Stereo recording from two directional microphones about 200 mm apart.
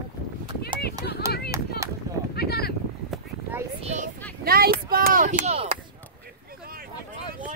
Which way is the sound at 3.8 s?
35° right (ahead or behind).